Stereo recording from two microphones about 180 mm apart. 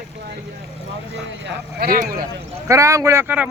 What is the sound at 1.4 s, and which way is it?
Speech, 60° right (ahead or behind).